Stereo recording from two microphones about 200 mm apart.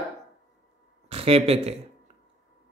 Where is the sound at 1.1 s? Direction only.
30° right (ahead or behind).